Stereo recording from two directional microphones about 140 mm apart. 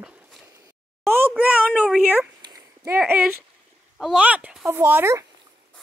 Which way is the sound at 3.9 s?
5° right (ahead or behind).